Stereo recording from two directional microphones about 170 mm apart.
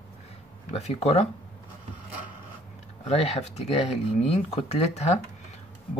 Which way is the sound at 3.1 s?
40° left (ahead or behind).